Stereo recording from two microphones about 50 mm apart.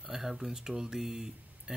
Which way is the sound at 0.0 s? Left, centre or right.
Centre.